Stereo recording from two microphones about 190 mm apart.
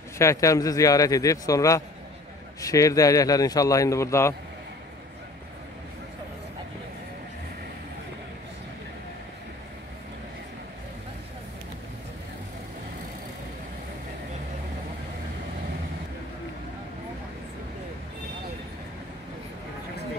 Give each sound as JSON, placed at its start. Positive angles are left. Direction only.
{"t": 0.2, "sound": "speech", "side_deg": 15}